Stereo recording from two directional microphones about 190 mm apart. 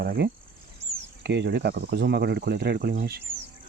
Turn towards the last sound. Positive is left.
turn(degrees=-55)  # may be behind; listen again after turning